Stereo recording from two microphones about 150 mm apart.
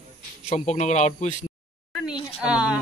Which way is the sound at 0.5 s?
50° left (ahead or behind).